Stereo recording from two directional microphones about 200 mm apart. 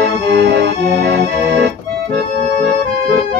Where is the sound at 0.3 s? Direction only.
55° right (ahead or behind).